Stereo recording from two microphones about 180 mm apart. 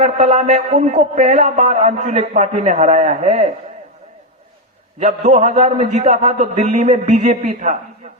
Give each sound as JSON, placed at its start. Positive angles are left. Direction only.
{"t": 0.0, "sound": "a man's voice", "side_deg": -40}
{"t": 4.9, "sound": "a man's voice", "side_deg": -40}